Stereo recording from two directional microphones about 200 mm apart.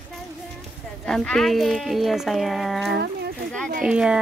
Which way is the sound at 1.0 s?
5° left (ahead or behind).